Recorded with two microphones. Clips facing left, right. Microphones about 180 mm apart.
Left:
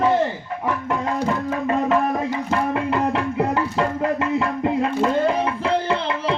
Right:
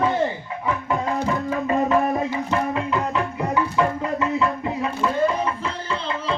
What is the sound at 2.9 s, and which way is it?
Music, 65° left (ahead or behind).